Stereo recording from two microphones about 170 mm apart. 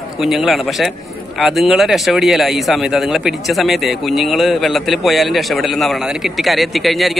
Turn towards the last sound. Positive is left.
turn(degrees=0)  # may be behind; listen again after turning